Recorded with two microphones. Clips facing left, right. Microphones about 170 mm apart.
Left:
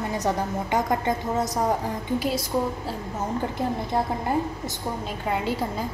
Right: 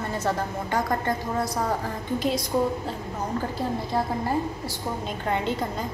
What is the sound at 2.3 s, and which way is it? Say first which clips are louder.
Speech: right 1 dB; 5° left (ahead or behind).